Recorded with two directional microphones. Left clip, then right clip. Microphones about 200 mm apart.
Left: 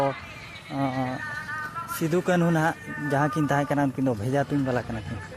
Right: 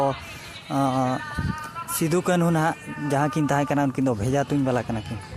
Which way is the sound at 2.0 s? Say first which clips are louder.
Right 2 dB; 20° right (ahead or behind).